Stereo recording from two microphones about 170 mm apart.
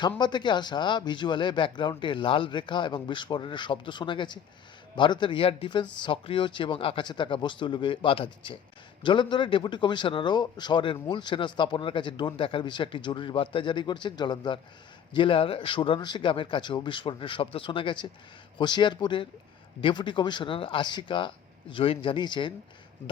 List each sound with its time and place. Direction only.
0.2 s speech: 25° left (ahead or behind)